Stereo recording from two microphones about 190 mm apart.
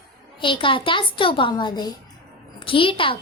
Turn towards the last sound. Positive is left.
turn(degrees=25)  # may be behind; listen again after turning